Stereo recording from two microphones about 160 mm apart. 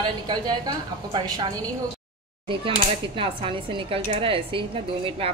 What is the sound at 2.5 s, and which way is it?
Speech, 35° right (ahead or behind).